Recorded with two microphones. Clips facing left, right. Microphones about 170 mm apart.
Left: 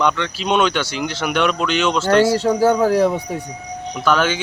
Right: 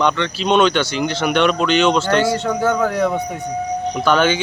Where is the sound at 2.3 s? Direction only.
35° left (ahead or behind).